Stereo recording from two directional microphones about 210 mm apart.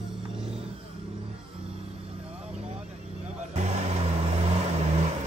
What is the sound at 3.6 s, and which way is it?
Vehicle, 30° right (ahead or behind).